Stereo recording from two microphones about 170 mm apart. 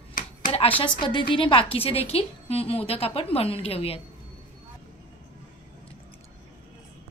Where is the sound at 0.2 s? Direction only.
55° left (ahead or behind).